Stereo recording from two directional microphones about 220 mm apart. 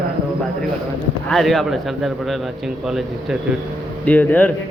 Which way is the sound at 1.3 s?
Centre (ahead or behind).